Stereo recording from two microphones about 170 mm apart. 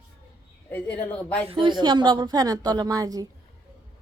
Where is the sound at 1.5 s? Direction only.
30° right (ahead or behind).